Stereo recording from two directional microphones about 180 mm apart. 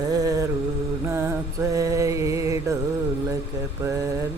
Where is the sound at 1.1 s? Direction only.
15° right (ahead or behind).